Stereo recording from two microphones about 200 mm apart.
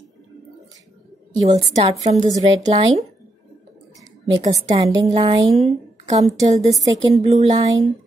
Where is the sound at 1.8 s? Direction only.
30° right (ahead or behind).